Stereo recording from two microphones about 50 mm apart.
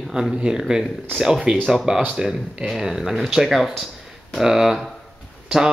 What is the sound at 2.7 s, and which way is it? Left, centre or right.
Speech, centre.